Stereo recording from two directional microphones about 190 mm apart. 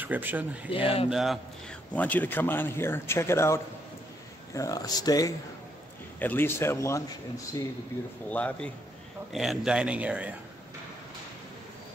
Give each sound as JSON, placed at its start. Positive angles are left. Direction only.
{"t": 0.0, "sound": "speech", "side_deg": -10}
{"t": 0.7, "sound": "speech", "side_deg": 30}
{"t": 1.1, "sound": "a man's voice", "side_deg": 0}
{"t": 8.3, "sound": "a man's voice", "side_deg": 10}